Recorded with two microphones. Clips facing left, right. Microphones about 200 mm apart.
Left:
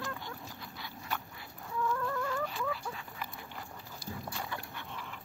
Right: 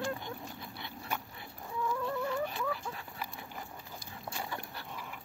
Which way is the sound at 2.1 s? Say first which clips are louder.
Right 1 dB; 20° right (ahead or behind).